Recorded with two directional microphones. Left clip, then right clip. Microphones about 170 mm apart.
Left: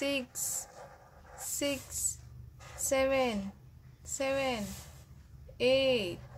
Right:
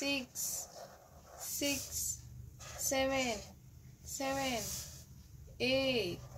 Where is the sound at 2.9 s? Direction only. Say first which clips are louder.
Left 5 dB; 30° left (ahead or behind).